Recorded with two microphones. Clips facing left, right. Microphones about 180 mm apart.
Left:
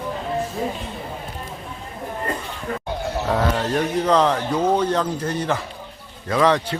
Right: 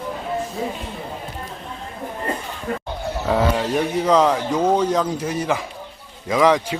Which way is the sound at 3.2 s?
5° right (ahead or behind).